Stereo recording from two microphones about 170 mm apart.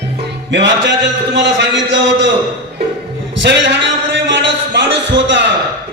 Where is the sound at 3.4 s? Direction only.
90° right.